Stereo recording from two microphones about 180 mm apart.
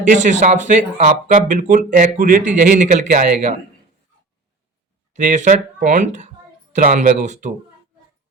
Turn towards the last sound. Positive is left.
turn(degrees=-40)  # may be behind; listen again after turning